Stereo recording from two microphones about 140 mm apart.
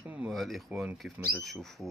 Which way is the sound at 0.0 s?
10° right (ahead or behind).